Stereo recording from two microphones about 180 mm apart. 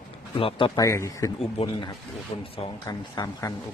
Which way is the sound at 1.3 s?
30° left (ahead or behind).